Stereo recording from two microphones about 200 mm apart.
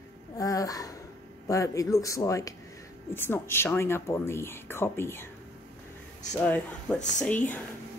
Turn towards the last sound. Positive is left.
turn(degrees=10)  # may be behind; listen again after turning